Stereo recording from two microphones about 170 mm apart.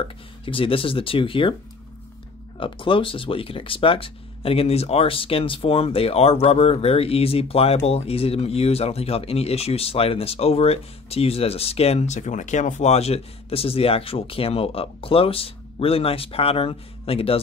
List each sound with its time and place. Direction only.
0.5 s speech: 30° left (ahead or behind)
2.6 s speech: 30° left (ahead or behind)